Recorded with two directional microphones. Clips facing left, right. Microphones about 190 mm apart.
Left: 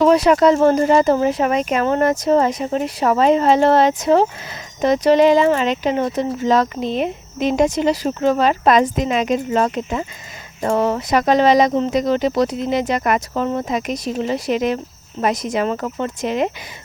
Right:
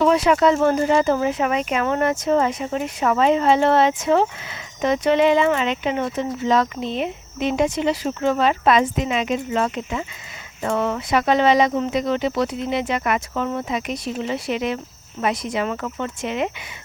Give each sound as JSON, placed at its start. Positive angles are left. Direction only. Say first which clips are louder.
{"t": 0.0, "sound": "speech", "louder": "left 4 dB", "side_deg": 40}